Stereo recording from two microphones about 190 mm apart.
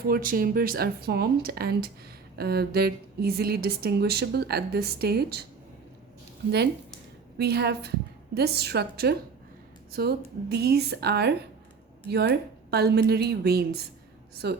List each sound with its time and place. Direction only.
0.1 s a woman's voice: 50° right (ahead or behind)
7.3 s a woman's voice: 60° right (ahead or behind)